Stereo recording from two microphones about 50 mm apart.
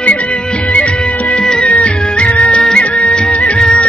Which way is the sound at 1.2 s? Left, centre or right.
Centre.